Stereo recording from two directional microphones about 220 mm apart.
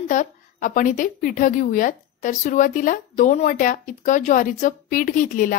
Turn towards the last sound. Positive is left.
turn(degrees=40)  # may be behind; listen again after turning